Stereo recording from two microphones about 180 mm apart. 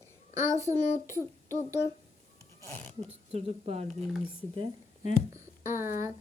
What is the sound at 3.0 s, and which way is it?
Speech, 35° right (ahead or behind).